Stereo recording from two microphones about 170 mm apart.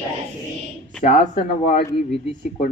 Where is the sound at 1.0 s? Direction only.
50° left (ahead or behind).